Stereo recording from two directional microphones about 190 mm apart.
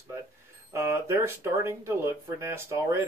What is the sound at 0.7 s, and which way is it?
Speech, 15° right (ahead or behind).